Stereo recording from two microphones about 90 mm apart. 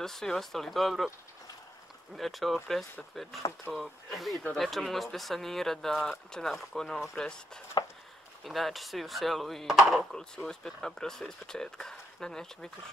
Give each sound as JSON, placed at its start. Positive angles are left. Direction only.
{"t": 0.0, "sound": "speech", "side_deg": 5}
{"t": 2.1, "sound": "speech", "side_deg": 0}
{"t": 7.8, "sound": "a sound", "side_deg": 60}
{"t": 8.5, "sound": "speech", "side_deg": 0}
{"t": 10.1, "sound": "speech", "side_deg": 10}